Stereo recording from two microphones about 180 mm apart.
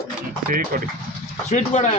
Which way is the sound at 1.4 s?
35° left (ahead or behind).